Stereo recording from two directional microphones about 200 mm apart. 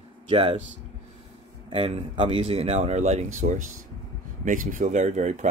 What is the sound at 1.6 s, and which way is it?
Speech, 30° right (ahead or behind).